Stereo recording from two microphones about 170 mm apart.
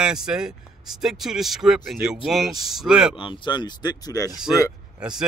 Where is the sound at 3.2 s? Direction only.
30° left (ahead or behind).